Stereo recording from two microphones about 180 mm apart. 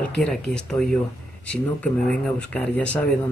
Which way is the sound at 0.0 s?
5° left (ahead or behind).